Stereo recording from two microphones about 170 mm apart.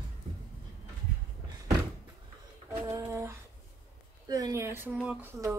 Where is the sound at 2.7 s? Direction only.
15° right (ahead or behind).